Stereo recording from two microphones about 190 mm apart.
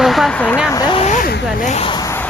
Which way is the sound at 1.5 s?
35° left (ahead or behind).